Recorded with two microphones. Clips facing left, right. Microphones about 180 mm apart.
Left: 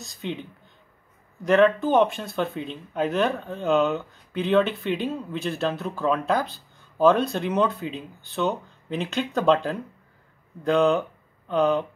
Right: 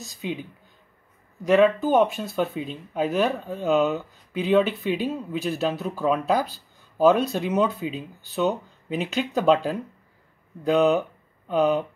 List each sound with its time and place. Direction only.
0.0 s speech: 5° right (ahead or behind)